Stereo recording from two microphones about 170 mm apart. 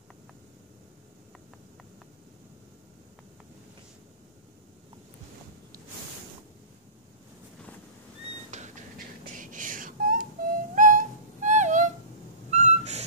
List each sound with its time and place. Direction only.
8.5 s a sound: 45° right (ahead or behind)
9.4 s music: 50° right (ahead or behind)
12.4 s owl: 40° right (ahead or behind)